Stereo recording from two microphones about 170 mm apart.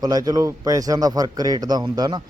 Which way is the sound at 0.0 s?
20° right (ahead or behind).